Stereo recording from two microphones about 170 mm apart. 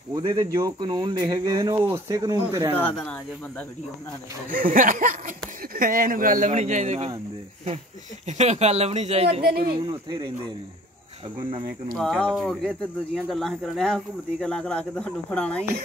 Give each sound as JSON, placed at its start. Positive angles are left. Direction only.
{"t": 0.1, "sound": "speech", "side_deg": -30}
{"t": 4.5, "sound": "speech", "side_deg": -55}
{"t": 8.3, "sound": "speech", "side_deg": -40}
{"t": 9.8, "sound": "speech", "side_deg": -25}
{"t": 12.0, "sound": "speech", "side_deg": 5}